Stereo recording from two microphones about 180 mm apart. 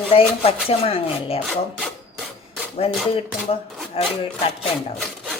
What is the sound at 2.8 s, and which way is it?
Speech, 35° left (ahead or behind).